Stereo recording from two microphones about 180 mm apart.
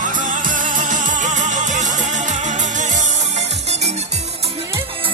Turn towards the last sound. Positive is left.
turn(degrees=-35)  # may be behind; listen again after turning